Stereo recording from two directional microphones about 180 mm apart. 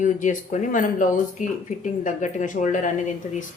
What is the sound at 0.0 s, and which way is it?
A woman's voice, 45° left (ahead or behind).